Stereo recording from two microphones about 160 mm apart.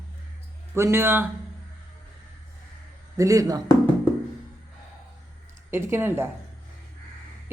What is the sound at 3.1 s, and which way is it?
Speech, 20° right (ahead or behind).